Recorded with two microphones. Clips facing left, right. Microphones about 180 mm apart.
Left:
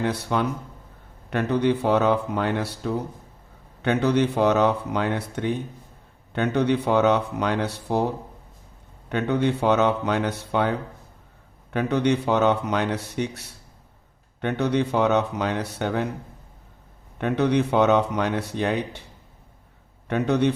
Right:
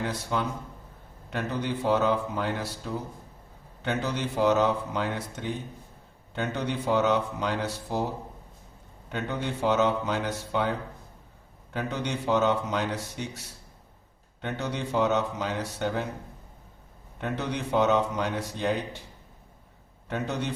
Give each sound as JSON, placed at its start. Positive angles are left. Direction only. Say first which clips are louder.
{"t": 0.0, "sound": "a man's voice", "louder": "left 5 dB", "side_deg": 65}
{"t": 9.0, "sound": "a man's voice", "louder": "left 9 dB", "side_deg": 65}
{"t": 14.4, "sound": "a man's voice", "louder": "left 9 dB", "side_deg": 65}
{"t": 17.2, "sound": "a man's voice", "louder": "left 10 dB", "side_deg": 65}
{"t": 20.1, "sound": "a man's voice", "louder": "left 9 dB", "side_deg": 65}